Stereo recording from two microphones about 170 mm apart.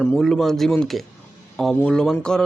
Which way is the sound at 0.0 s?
5° left (ahead or behind).